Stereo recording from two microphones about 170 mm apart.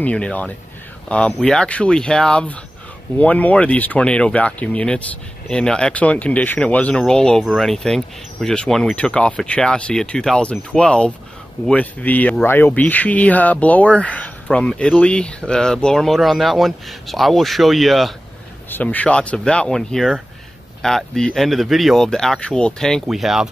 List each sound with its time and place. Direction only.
0.0 s speech: 5° left (ahead or behind)